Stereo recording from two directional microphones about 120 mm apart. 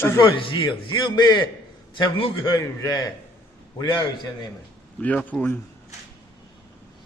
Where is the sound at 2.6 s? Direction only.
30° left (ahead or behind).